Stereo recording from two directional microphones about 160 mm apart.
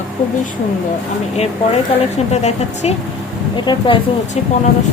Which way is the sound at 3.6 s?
30° left (ahead or behind).